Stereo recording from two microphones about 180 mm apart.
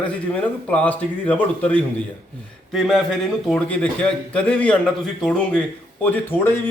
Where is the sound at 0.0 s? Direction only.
10° left (ahead or behind).